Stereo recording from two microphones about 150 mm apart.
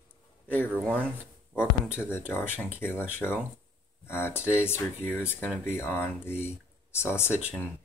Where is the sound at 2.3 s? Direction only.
15° left (ahead or behind).